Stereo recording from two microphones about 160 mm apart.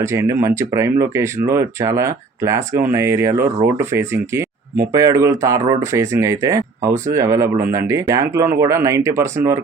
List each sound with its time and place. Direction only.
0.0 s speech: 20° right (ahead or behind)